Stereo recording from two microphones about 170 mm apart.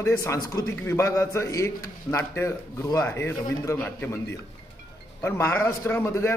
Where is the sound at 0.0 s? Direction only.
15° left (ahead or behind).